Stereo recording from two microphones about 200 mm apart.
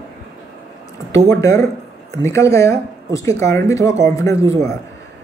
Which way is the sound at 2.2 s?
15° left (ahead or behind).